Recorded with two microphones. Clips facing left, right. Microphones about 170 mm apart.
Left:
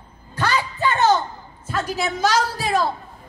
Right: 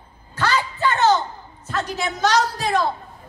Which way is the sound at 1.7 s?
5° left (ahead or behind).